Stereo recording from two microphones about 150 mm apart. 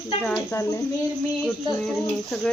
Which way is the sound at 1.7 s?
5° left (ahead or behind).